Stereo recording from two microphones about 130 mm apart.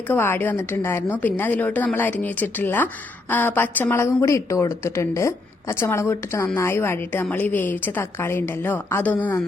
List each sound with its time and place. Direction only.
0.1 s a woman's voice: 15° left (ahead or behind)